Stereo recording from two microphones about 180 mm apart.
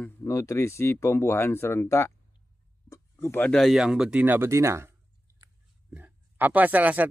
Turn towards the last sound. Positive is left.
turn(degrees=-10)  # may be behind; listen again after turning